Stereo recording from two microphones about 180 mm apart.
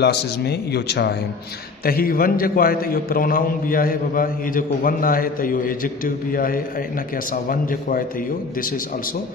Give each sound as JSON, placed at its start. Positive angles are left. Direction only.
{"t": 0.0, "sound": "speech", "side_deg": 65}
{"t": 1.9, "sound": "a man's voice", "side_deg": 55}